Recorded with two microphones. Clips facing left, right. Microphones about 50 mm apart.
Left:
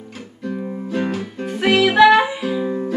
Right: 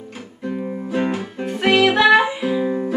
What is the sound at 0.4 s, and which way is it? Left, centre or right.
Music, centre.